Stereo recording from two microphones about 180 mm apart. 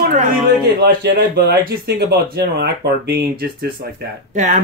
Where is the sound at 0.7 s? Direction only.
65° right (ahead or behind).